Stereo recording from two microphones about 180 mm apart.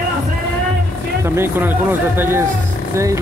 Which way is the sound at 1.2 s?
15° right (ahead or behind).